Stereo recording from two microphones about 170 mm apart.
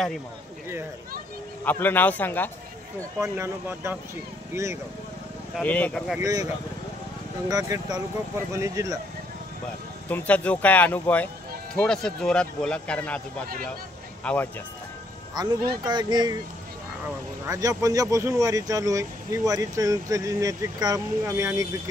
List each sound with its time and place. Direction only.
1.6 s speech: 10° left (ahead or behind)
3.2 s speech: 15° right (ahead or behind)
5.6 s speech: 10° left (ahead or behind)
6.1 s speech: 20° right (ahead or behind)
10.0 s speech: 10° left (ahead or behind)
14.2 s speech: 10° left (ahead or behind)
15.4 s speech: 25° right (ahead or behind)
17.5 s speech: 20° right (ahead or behind)